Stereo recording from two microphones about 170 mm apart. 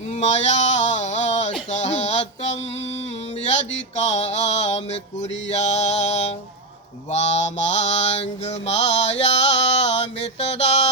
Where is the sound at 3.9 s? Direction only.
40° left (ahead or behind).